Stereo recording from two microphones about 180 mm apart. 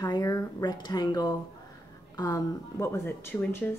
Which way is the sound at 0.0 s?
20° left (ahead or behind).